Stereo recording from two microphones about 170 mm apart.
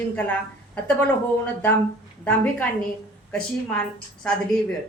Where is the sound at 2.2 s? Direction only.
10° left (ahead or behind).